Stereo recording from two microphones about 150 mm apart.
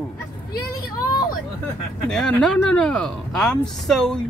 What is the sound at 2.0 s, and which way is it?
Speech, 5° left (ahead or behind).